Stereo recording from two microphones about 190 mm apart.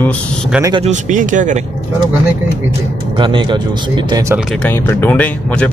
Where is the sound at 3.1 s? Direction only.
25° right (ahead or behind).